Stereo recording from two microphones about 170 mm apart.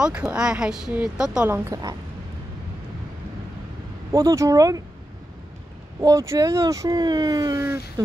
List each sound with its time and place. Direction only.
0.0 s speech: 5° right (ahead or behind)
1.5 s speech: 20° right (ahead or behind)
4.1 s speech: 20° right (ahead or behind)
5.9 s speech: 20° right (ahead or behind)